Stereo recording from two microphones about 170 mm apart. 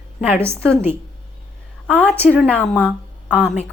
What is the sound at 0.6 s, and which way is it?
A woman's voice, 5° left (ahead or behind).